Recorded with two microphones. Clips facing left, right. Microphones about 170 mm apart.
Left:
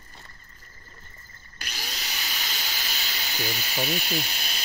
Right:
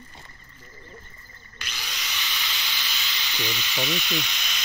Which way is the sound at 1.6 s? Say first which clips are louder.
Even; 40° left (ahead or behind).